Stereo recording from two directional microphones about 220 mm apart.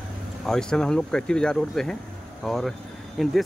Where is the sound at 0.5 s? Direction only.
5° left (ahead or behind).